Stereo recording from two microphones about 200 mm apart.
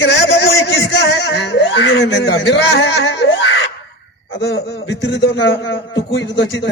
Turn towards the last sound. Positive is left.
turn(degrees=65)  # may be behind; listen again after turning